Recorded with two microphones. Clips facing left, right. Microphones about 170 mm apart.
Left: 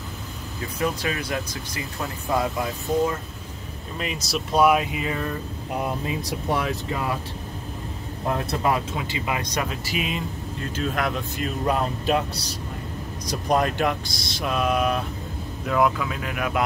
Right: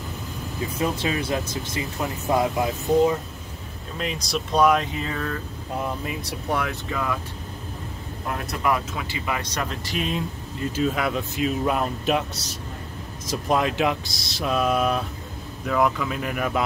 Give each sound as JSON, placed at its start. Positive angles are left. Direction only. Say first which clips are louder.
{"t": 0.7, "sound": "speech", "louder": "right 1 dB", "side_deg": -25}
{"t": 4.0, "sound": "speech", "louder": "right 1 dB", "side_deg": 5}
{"t": 6.0, "sound": "speech", "louder": "left 2 dB", "side_deg": 25}
{"t": 8.3, "sound": "speech", "louder": "left 1 dB", "side_deg": 30}